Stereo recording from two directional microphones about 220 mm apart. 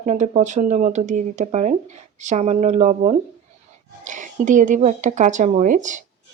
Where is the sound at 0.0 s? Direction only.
30° right (ahead or behind).